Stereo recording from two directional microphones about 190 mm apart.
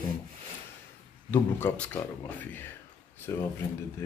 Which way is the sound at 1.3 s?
10° left (ahead or behind).